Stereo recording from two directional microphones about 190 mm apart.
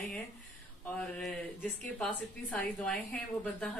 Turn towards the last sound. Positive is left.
turn(degrees=5)  # may be behind; listen again after turning